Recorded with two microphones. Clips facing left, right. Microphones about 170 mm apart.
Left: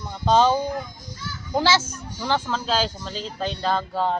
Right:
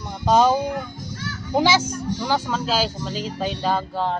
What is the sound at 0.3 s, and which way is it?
Speech, 10° right (ahead or behind).